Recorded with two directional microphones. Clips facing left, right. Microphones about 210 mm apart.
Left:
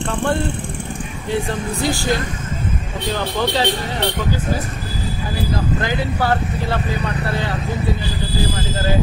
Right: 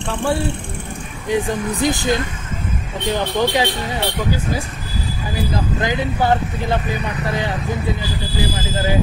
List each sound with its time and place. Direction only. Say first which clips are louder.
1.3 s speech: right 3 dB; 20° right (ahead or behind)
5.8 s speech: right 1 dB; 15° right (ahead or behind)